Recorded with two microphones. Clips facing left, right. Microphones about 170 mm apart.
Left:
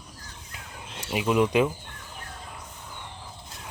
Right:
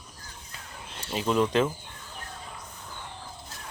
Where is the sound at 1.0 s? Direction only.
10° left (ahead or behind).